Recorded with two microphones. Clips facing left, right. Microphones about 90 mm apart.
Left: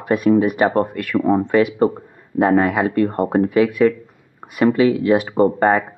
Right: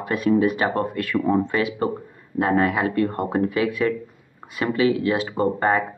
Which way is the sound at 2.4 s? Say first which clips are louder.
Left 5 dB; 40° left (ahead or behind).